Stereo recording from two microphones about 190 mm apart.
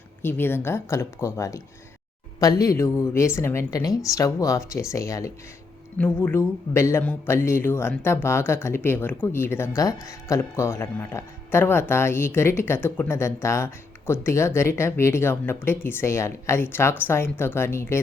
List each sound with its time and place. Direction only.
0.2 s speech: 10° left (ahead or behind)